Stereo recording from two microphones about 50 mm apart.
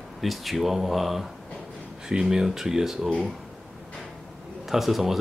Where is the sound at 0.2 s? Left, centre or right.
Centre.